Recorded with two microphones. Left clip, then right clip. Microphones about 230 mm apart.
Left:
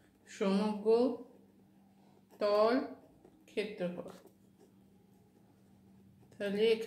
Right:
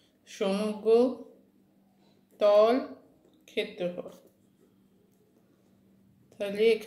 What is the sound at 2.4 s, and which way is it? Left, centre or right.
Speech, centre.